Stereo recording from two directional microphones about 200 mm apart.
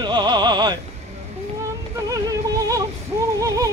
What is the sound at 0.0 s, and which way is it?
Music, 20° right (ahead or behind).